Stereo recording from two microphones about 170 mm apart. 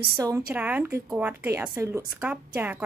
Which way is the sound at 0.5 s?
10° right (ahead or behind).